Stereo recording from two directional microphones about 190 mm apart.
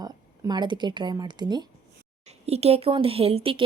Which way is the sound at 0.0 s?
20° right (ahead or behind).